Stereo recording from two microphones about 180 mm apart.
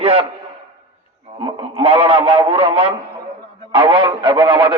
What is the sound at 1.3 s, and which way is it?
A man's voice, 30° right (ahead or behind).